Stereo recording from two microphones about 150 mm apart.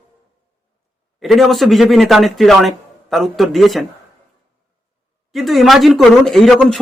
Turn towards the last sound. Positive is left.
turn(degrees=0)  # may be behind; listen again after turning